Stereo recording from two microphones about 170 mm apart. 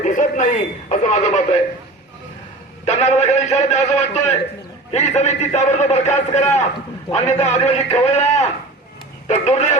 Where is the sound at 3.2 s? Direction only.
40° left (ahead or behind).